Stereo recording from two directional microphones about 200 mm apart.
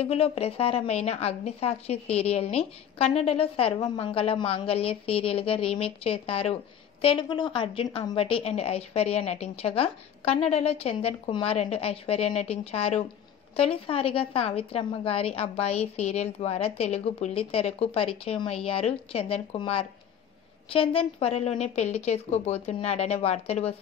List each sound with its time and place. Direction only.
0.0 s a woman's voice: 30° left (ahead or behind)